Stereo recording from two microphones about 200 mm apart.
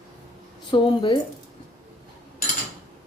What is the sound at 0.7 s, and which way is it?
Speech, 25° left (ahead or behind).